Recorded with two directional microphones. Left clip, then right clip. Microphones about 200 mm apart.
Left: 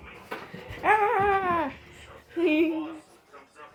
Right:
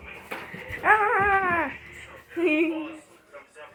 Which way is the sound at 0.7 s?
30° left (ahead or behind).